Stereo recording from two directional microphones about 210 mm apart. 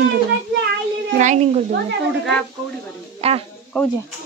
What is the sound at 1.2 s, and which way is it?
Speech, 35° right (ahead or behind).